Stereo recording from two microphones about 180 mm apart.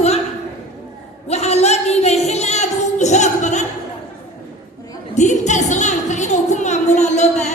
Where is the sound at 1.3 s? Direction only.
35° left (ahead or behind).